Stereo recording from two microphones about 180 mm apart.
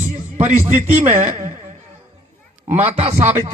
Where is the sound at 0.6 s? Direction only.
10° right (ahead or behind).